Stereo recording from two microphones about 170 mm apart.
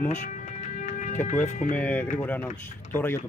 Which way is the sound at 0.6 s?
45° left (ahead or behind).